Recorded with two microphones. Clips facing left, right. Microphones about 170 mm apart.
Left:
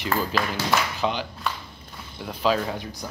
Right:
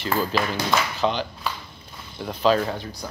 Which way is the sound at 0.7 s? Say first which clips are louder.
Right 1 dB; 10° left (ahead or behind).